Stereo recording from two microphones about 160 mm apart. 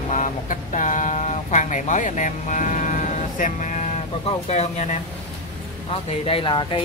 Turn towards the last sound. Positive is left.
turn(degrees=30)  # may be behind; listen again after turning